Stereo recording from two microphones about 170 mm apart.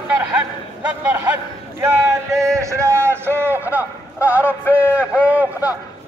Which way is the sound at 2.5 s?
15° right (ahead or behind).